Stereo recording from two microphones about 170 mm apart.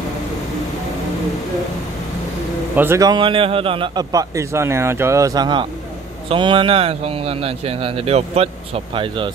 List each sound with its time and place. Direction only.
2.7 s a man's voice: 15° right (ahead or behind); by 9.3 s 30° right (ahead or behind)